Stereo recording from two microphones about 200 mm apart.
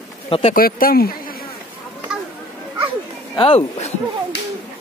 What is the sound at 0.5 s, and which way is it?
Speech, 45° left (ahead or behind).